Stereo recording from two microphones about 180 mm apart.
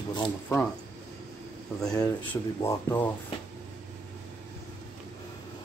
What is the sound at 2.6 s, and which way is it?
Speech, 15° left (ahead or behind).